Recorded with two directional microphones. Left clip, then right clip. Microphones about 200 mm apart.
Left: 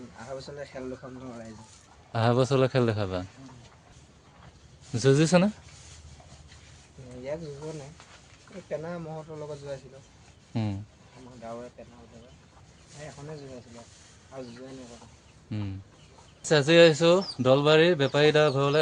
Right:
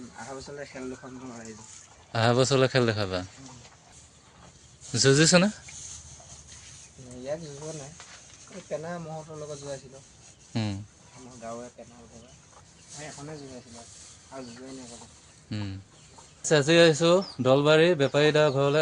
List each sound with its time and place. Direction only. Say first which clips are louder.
0.3 s speech: left 2 dB; 50° left (ahead or behind)
2.1 s a man's voice: right 1 dB; 5° left (ahead or behind)
4.9 s a man's voice: right 2 dB; centre (ahead or behind)
8.8 s speech: even; 20° left (ahead or behind)
10.5 s a sound: right 1 dB; centre (ahead or behind)
15.4 s speech: right 1 dB; centre (ahead or behind)